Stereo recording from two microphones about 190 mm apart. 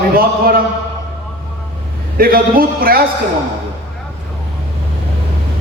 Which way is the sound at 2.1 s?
50° right (ahead or behind).